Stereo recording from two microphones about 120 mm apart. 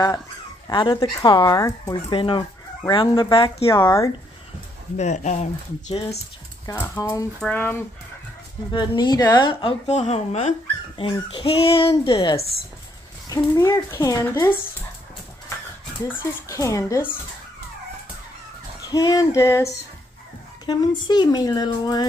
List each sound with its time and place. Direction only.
0.7 s speech: 40° left (ahead or behind)
2.1 s speech: 45° left (ahead or behind)
3.6 s speech: 20° left (ahead or behind)
4.9 s speech: 75° left (ahead or behind)
6.6 s speech: 30° left (ahead or behind)
7.3 s speech: 10° left (ahead or behind)
8.7 s speech: 35° left (ahead or behind)
9.8 s speech: 70° left (ahead or behind)
11.0 s speech: 45° left (ahead or behind)
13.3 s speech: 25° left (ahead or behind)
16.1 s speech: 20° left (ahead or behind)
18.9 s speech: 35° left (ahead or behind)
20.6 s speech: 35° left (ahead or behind)